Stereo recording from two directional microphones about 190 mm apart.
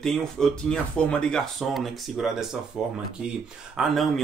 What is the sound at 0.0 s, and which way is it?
Speech, centre (ahead or behind).